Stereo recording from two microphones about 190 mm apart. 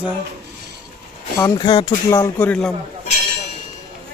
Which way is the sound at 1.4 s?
20° left (ahead or behind).